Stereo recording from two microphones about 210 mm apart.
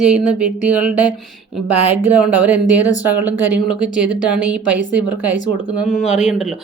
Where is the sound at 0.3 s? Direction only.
5° right (ahead or behind).